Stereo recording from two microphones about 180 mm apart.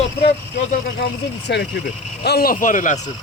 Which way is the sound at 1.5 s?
65° left (ahead or behind).